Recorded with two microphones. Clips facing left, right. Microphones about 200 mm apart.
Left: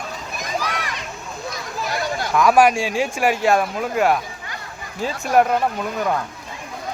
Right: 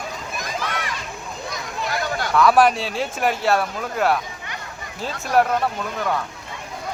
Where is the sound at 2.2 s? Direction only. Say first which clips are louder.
Left 1 dB; 15° left (ahead or behind).